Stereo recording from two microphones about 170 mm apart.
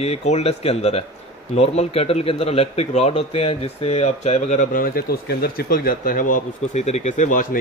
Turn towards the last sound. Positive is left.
turn(degrees=50)  # may be behind; listen again after turning